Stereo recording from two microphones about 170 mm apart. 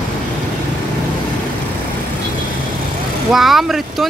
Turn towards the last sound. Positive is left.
turn(degrees=0)  # may be behind; listen again after turning